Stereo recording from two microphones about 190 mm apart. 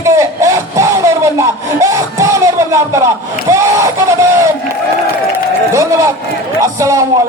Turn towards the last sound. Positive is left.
turn(degrees=-15)  # may be behind; listen again after turning